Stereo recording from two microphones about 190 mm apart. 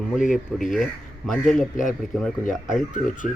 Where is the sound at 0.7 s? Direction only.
Centre (ahead or behind).